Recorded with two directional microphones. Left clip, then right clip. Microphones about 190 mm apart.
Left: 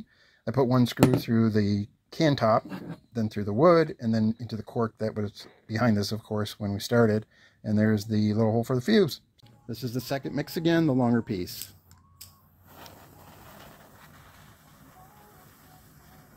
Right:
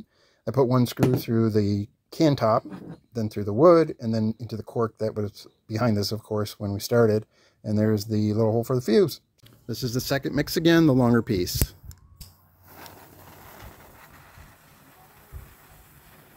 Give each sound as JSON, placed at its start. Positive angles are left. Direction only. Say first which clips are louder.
{"t": 0.5, "sound": "speech", "louder": "right 2 dB", "side_deg": -10}
{"t": 9.7, "sound": "speech", "louder": "right 5 dB", "side_deg": -25}
{"t": 12.9, "sound": "a sound", "louder": "right 3 dB", "side_deg": -20}